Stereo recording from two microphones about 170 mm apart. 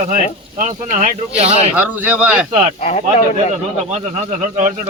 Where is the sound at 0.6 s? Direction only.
50° right (ahead or behind).